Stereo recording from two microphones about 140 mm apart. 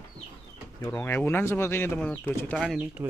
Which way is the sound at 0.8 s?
20° left (ahead or behind).